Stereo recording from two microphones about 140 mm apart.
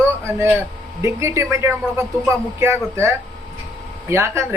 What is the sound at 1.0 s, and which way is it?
Speech, 20° right (ahead or behind).